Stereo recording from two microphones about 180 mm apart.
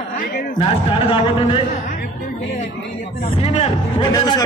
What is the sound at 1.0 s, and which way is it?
Music, 30° left (ahead or behind).